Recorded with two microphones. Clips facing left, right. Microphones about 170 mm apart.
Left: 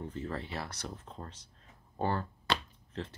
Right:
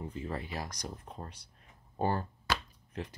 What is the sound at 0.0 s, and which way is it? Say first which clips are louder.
Speech: even; 10° right (ahead or behind).